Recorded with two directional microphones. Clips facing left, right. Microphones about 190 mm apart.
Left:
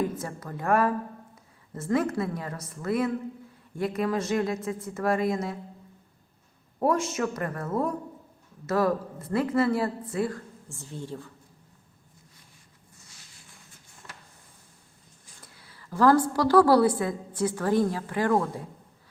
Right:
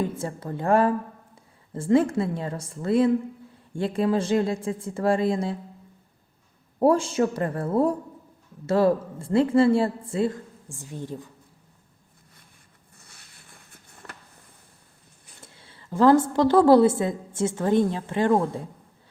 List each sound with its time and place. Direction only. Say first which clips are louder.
0.0 s speech: right 2 dB; 30° right (ahead or behind)
6.7 s speech: right 5 dB; 30° right (ahead or behind); by 11.3 s 15° right (ahead or behind)
13.0 s a sound: right 3 dB; 60° right (ahead or behind)
15.4 s a woman's voice: right 3 dB; 25° right (ahead or behind)